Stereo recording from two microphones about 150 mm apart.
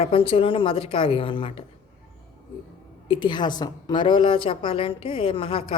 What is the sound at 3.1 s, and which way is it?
A woman's voice, 30° left (ahead or behind).